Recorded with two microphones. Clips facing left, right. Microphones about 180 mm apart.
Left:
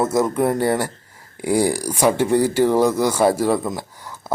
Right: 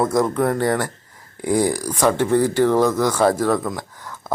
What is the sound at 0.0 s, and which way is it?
A man's voice, 5° left (ahead or behind).